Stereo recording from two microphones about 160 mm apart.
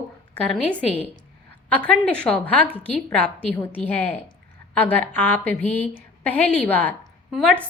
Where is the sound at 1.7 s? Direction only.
10° left (ahead or behind).